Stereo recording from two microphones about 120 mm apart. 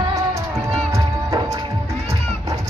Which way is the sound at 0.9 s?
25° right (ahead or behind).